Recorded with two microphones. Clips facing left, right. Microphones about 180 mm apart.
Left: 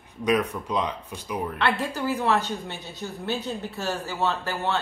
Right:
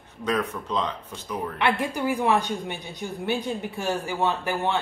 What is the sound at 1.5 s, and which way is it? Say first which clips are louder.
A woman's voice: right 3 dB; 15° right (ahead or behind).